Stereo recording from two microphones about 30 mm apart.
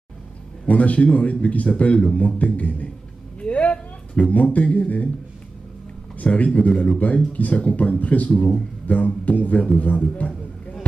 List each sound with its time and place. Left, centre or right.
0.7 s music: left
1.7 s music: left
2.1 s speech: left
3.3 s a sound: left
4.3 s music: left
6.2 s music: left
7.0 s speech: left
7.3 s music: left
8.0 s speech: left
8.8 s music: left
9.8 s a sound: left